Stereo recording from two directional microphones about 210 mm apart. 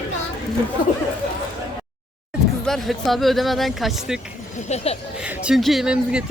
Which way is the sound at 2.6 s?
Centre (ahead or behind).